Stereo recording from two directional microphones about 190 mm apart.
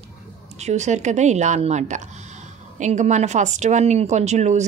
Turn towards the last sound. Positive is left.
turn(degrees=-35)  # may be behind; listen again after turning